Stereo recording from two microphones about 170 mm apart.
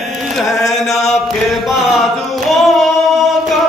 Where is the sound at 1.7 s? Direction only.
Centre (ahead or behind).